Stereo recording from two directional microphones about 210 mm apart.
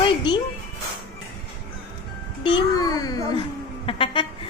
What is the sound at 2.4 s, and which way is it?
A child's voice, 20° left (ahead or behind).